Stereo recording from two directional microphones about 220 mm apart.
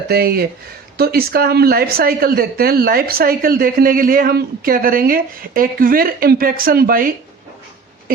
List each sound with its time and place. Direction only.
0.1 s speech: 45° right (ahead or behind)